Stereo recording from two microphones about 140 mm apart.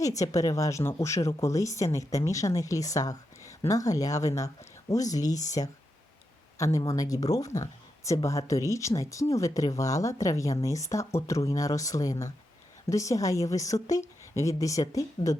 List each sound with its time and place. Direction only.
0.0 s speech: 25° left (ahead or behind)